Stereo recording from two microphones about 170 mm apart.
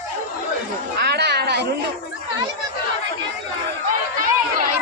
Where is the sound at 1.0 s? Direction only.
75° right (ahead or behind).